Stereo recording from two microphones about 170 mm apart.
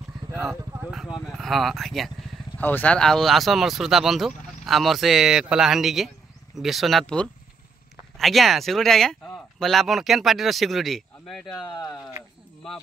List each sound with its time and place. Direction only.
0.7 s a sound: 5° right (ahead or behind)
1.3 s speech: centre (ahead or behind)
11.6 s speech: 25° left (ahead or behind)